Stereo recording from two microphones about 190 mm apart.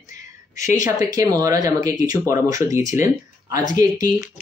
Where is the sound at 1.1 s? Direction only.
15° right (ahead or behind).